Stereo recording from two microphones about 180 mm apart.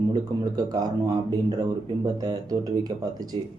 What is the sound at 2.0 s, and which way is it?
Speech, 20° right (ahead or behind).